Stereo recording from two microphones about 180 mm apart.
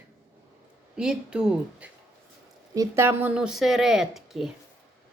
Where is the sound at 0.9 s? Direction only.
5° right (ahead or behind).